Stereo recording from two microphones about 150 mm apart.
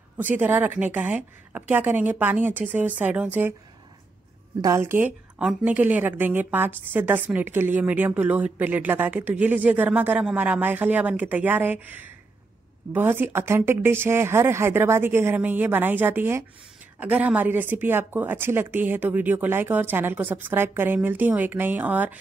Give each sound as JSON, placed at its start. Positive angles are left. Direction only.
{"t": 0.2, "sound": "a woman's voice", "side_deg": -10}
{"t": 4.6, "sound": "a woman's voice", "side_deg": -20}